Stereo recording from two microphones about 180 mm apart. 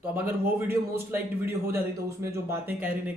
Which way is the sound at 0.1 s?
10° right (ahead or behind).